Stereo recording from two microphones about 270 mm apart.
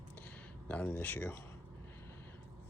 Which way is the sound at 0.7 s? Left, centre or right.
Centre.